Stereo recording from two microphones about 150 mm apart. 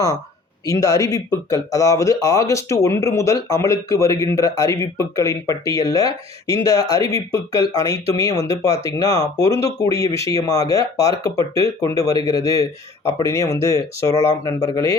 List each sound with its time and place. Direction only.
0.6 s speech: 20° left (ahead or behind)